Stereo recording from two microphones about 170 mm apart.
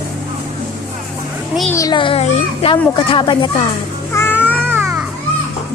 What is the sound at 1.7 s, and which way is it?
A child's voice, 20° left (ahead or behind).